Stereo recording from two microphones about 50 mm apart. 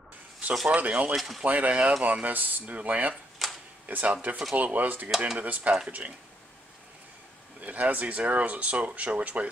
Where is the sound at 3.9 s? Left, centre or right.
Right.